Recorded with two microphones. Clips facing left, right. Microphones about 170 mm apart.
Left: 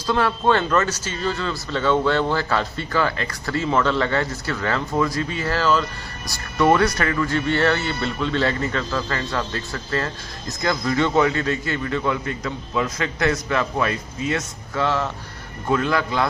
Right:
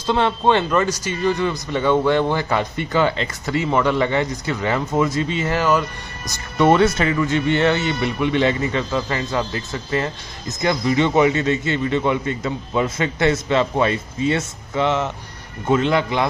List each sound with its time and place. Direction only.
0.0 s a man's voice: 25° right (ahead or behind)